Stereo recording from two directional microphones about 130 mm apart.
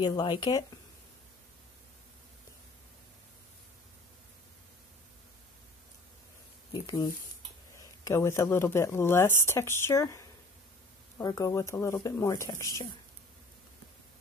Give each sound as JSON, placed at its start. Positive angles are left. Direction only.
{"t": 0.0, "sound": "speech", "side_deg": 35}
{"t": 6.7, "sound": "a sound", "side_deg": 35}
{"t": 7.7, "sound": "speech", "side_deg": 25}